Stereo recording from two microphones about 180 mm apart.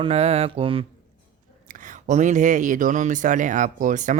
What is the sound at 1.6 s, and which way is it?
Speech, 45° right (ahead or behind).